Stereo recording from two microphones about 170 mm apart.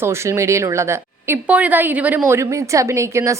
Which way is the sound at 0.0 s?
15° right (ahead or behind).